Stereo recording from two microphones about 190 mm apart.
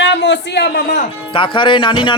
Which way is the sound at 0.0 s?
70° left (ahead or behind).